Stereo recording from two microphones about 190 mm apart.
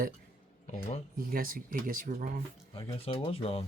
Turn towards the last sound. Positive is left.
turn(degrees=30)  # may be behind; listen again after turning